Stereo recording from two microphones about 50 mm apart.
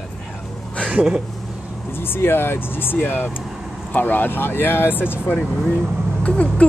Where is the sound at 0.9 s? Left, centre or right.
Centre.